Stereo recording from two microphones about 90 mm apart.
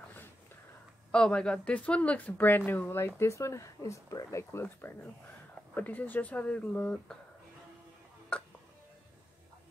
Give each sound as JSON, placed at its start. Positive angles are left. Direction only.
{"t": 1.1, "sound": "a woman's voice", "side_deg": 10}
{"t": 3.2, "sound": "a woman's voice", "side_deg": 35}
{"t": 8.3, "sound": "hiccup", "side_deg": 10}